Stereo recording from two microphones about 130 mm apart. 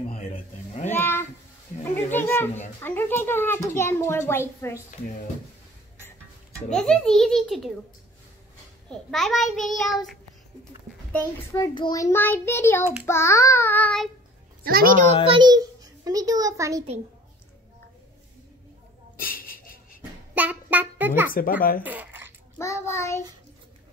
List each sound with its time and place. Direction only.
0.1 s a sound: 60° left (ahead or behind)
0.8 s a sound: 15° left (ahead or behind)
1.8 s a child's voice: 15° left (ahead or behind)
6.7 s a child's voice: 5° left (ahead or behind)
8.9 s a child's voice: centre (ahead or behind)
11.5 s a child's voice: 30° left (ahead or behind); by 13.9 s 15° left (ahead or behind)
15.2 s a child's voice: 35° right (ahead or behind)
19.1 s a sound: 90° left
20.3 s music: 10° right (ahead or behind)
21.3 s speech: 90° left
21.8 s a sound: 15° right (ahead or behind)
22.6 s a child's voice: 20° left (ahead or behind)